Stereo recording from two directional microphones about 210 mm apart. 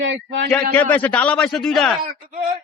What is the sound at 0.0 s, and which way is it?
Speech, 60° right (ahead or behind).